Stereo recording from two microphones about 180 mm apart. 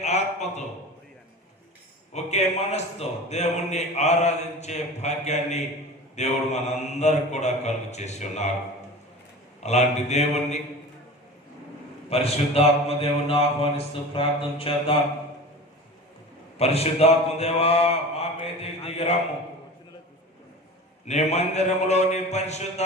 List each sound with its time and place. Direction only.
0.0 s a sound: 40° left (ahead or behind)
2.1 s a man's voice: 40° left (ahead or behind)
9.6 s a man's voice: 40° left (ahead or behind)
12.1 s a man's voice: 35° left (ahead or behind)
16.6 s a man's voice: 35° left (ahead or behind)
21.1 s a man's voice: 40° left (ahead or behind)